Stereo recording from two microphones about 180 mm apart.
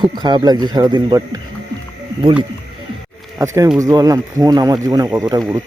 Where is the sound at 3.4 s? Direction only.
15° right (ahead or behind).